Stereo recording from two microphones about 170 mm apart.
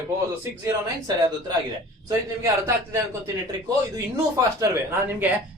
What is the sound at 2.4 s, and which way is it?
Speech, 20° right (ahead or behind).